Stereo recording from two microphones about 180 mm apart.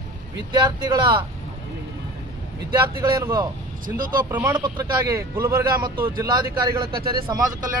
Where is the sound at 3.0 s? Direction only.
15° right (ahead or behind).